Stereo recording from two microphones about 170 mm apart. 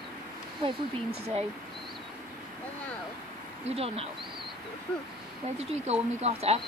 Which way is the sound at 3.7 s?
35° right (ahead or behind).